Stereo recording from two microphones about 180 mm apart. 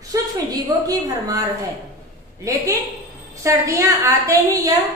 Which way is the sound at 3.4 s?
15° right (ahead or behind).